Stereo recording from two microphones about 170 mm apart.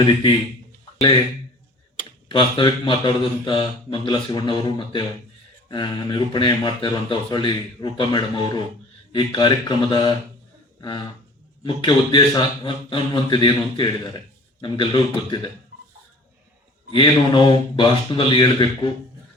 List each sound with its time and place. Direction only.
0.0 s speech: 30° left (ahead or behind)
2.3 s speech: 30° left (ahead or behind)
16.9 s speech: 30° left (ahead or behind)